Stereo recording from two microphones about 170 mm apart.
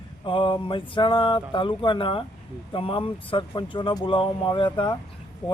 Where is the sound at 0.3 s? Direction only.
30° left (ahead or behind).